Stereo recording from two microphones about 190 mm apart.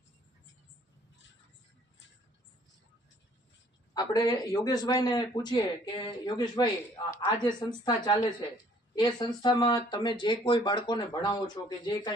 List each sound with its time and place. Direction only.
3.9 s speech: 20° left (ahead or behind)